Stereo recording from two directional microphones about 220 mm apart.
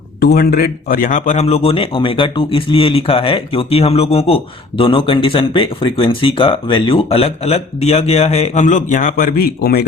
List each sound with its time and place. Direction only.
0.2 s speech: 45° left (ahead or behind)